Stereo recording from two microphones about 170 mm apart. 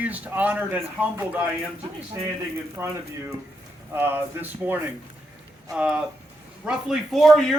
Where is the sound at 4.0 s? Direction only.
10° right (ahead or behind).